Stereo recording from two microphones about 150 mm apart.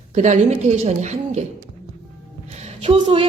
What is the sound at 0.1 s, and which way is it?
A woman's voice, 50° right (ahead or behind).